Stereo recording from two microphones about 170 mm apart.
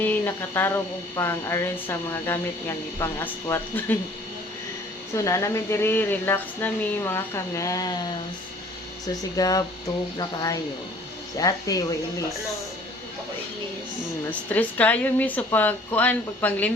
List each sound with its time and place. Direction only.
0.0 s speech: 10° left (ahead or behind)
5.1 s speech: 20° left (ahead or behind)
9.3 s speech: 20° left (ahead or behind)
14.3 s speech: 10° left (ahead or behind)